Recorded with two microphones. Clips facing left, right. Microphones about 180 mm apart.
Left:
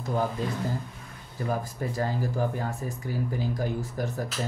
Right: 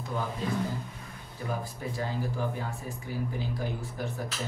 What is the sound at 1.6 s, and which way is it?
Speech, 45° left (ahead or behind).